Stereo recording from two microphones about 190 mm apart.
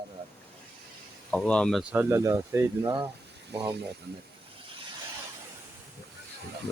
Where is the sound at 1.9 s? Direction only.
10° right (ahead or behind).